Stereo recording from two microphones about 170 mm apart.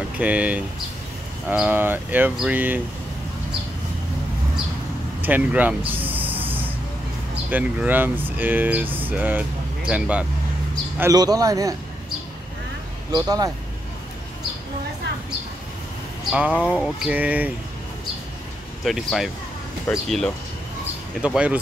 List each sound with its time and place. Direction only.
0.2 s speech: 10° right (ahead or behind)
5.2 s snort: 10° right (ahead or behind)
7.5 s speech: 10° right (ahead or behind)
11.0 s speech: 20° right (ahead or behind)
13.1 s speech: 20° right (ahead or behind)
16.3 s speech: 10° right (ahead or behind)
18.9 s speech: centre (ahead or behind)